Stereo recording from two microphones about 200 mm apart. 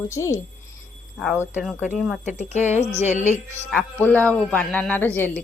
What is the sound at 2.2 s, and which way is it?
Speech, 35° left (ahead or behind).